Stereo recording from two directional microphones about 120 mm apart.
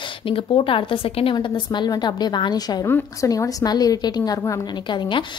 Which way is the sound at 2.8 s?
25° left (ahead or behind).